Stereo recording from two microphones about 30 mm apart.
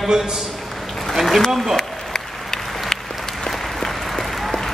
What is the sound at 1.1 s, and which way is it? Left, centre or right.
Speech, centre.